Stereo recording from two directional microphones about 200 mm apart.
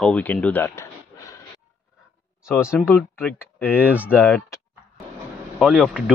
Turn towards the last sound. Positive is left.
turn(degrees=-5)  # may be behind; listen again after turning